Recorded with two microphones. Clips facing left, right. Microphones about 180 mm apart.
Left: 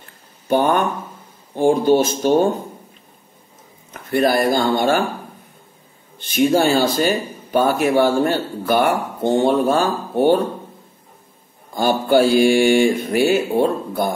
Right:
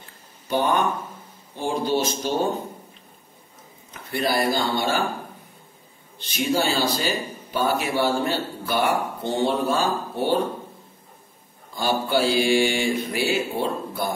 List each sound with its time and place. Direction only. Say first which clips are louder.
0.5 s speech: left 5 dB; 50° left (ahead or behind)
3.9 s speech: left 7 dB; 50° left (ahead or behind)
6.1 s speech: left 8 dB; 50° left (ahead or behind)
11.7 s speech: left 7 dB; 50° left (ahead or behind)